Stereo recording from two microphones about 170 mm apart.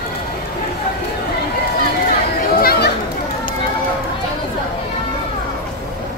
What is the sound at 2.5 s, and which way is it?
Chatter, 60° left (ahead or behind).